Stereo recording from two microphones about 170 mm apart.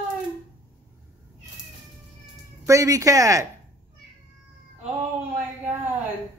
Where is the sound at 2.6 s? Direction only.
20° right (ahead or behind).